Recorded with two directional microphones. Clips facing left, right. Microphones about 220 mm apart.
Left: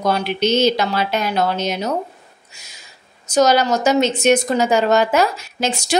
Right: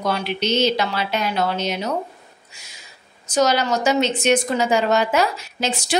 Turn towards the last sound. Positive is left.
turn(degrees=45)  # may be behind; listen again after turning